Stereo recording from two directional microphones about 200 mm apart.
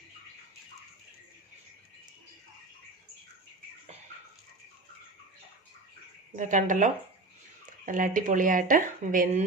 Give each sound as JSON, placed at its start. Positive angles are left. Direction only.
{"t": 6.3, "sound": "speech", "side_deg": -40}